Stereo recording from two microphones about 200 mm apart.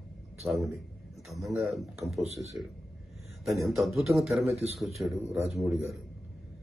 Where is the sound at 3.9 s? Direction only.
Centre (ahead or behind).